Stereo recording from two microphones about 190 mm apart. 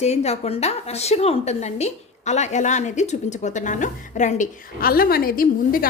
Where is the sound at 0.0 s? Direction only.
35° left (ahead or behind).